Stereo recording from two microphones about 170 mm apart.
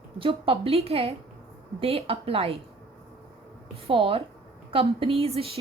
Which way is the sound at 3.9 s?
30° right (ahead or behind).